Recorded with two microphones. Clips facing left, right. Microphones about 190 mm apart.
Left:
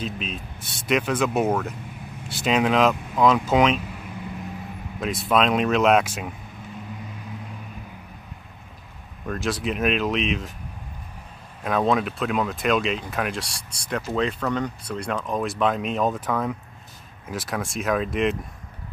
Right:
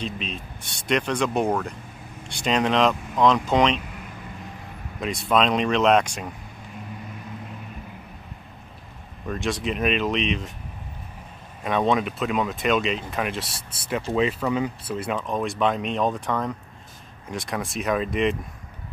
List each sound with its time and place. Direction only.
0.0 s speech: centre (ahead or behind)
5.0 s speech: centre (ahead or behind)
9.2 s speech: centre (ahead or behind)
11.6 s speech: centre (ahead or behind)